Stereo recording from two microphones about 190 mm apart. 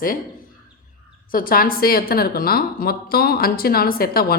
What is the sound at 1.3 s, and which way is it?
A woman's voice, 50° left (ahead or behind).